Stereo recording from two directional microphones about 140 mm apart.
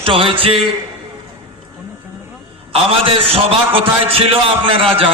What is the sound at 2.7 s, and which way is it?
A man's voice, 45° right (ahead or behind).